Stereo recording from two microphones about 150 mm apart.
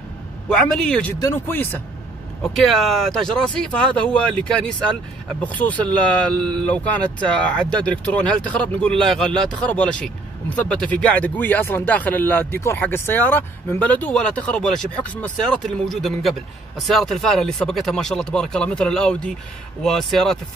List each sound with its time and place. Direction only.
0.5 s speech: 5° left (ahead or behind)
2.4 s speech: centre (ahead or behind)